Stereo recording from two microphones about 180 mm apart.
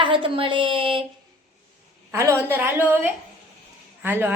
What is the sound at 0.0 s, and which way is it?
A woman's voice, 30° right (ahead or behind).